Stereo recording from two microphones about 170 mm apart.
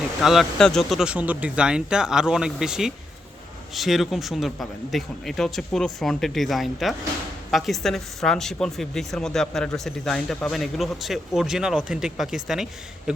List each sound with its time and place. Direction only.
0.2 s speech: centre (ahead or behind)